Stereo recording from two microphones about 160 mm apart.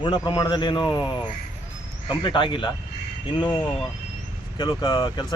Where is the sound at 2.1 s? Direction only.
30° left (ahead or behind).